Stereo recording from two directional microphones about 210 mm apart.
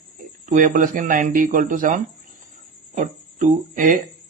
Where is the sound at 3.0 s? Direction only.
40° right (ahead or behind).